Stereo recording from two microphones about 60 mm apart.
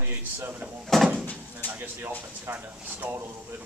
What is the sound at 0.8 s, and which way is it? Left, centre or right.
Speech, centre.